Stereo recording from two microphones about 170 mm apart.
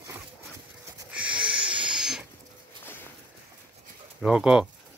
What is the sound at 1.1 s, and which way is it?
Wheeze, 5° right (ahead or behind).